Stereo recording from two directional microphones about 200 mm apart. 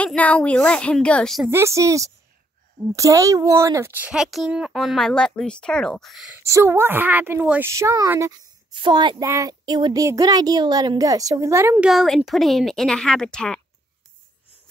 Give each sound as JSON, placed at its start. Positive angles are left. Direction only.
{"t": 0.0, "sound": "speech", "side_deg": 5}
{"t": 1.5, "sound": "speech", "side_deg": -15}
{"t": 6.4, "sound": "speech", "side_deg": -15}
{"t": 11.9, "sound": "speech", "side_deg": 0}